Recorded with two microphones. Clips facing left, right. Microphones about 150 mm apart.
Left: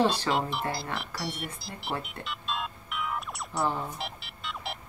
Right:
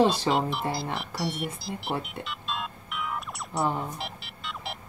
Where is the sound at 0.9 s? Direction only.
Centre (ahead or behind).